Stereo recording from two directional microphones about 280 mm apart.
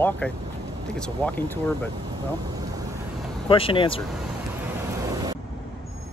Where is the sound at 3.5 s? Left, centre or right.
Centre.